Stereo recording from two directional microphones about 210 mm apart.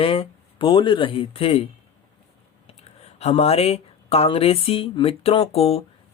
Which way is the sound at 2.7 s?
30° left (ahead or behind).